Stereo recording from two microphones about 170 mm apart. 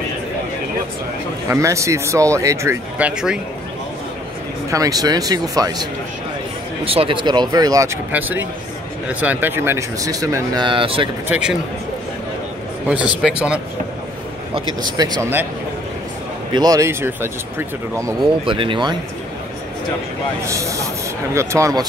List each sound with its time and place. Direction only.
1.5 s speech: 15° right (ahead or behind)
4.6 s speech: 20° right (ahead or behind)
6.8 s speech: 35° right (ahead or behind)
11.2 s speech: 5° right (ahead or behind)
12.8 s speech: 5° right (ahead or behind)
15.0 s speech: 25° right (ahead or behind)
16.5 s speech: 20° right (ahead or behind)
18.4 s speech: 30° right (ahead or behind)
20.4 s speech: 20° right (ahead or behind)